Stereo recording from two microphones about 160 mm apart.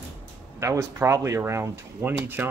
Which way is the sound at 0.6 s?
20° right (ahead or behind).